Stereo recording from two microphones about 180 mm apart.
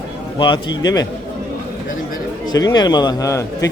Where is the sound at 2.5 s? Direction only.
20° left (ahead or behind).